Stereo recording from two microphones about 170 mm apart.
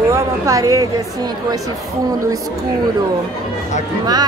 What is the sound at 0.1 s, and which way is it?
Speech, 20° right (ahead or behind).